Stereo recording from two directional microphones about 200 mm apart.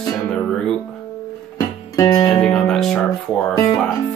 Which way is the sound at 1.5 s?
15° left (ahead or behind).